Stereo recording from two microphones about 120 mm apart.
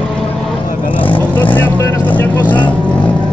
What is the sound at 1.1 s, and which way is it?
Vehicle, 15° left (ahead or behind).